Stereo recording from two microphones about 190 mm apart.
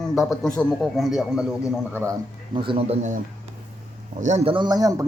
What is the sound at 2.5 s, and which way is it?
Speech, 25° right (ahead or behind).